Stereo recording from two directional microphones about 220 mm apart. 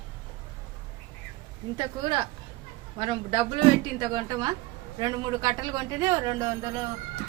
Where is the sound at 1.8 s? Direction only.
20° right (ahead or behind).